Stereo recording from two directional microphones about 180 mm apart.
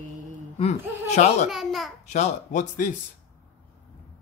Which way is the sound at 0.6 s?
35° left (ahead or behind).